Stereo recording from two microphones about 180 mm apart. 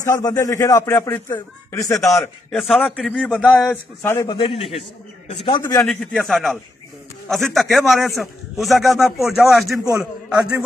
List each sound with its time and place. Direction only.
0.0 s a man's voice: 20° left (ahead or behind)
2.5 s a man's voice: centre (ahead or behind)
4.3 s a man's voice: 30° left (ahead or behind)
5.6 s a man's voice: 15° left (ahead or behind)
5.9 s a man's voice: centre (ahead or behind)